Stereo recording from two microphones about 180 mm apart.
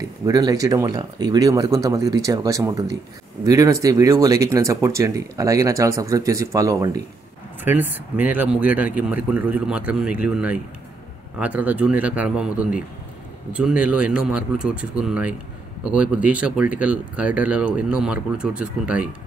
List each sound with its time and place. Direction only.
0.2 s a man's voice: 20° right (ahead or behind)